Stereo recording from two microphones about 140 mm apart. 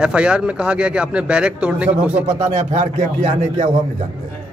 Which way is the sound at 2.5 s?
55° right (ahead or behind).